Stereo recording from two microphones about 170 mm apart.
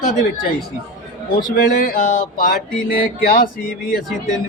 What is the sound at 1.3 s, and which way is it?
Mantra, 60° left (ahead or behind).